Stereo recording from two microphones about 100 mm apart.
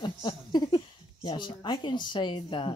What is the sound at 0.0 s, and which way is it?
Speech, 45° left (ahead or behind).